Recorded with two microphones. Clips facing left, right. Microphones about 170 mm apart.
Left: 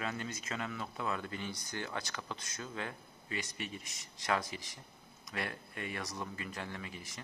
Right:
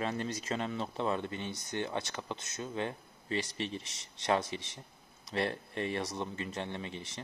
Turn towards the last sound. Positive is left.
turn(degrees=-25)  # may be behind; listen again after turning